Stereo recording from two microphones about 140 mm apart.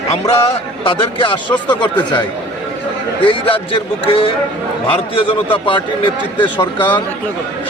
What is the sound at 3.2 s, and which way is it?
A man's voice, 40° left (ahead or behind).